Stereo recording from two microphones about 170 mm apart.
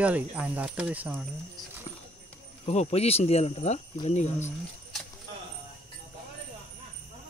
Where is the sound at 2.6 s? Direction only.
40° left (ahead or behind).